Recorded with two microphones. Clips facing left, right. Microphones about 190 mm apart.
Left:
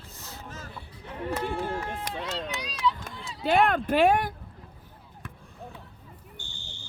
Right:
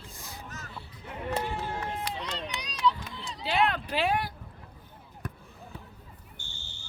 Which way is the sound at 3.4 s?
50° left (ahead or behind).